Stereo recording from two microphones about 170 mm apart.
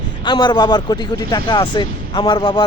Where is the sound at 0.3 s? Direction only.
25° left (ahead or behind).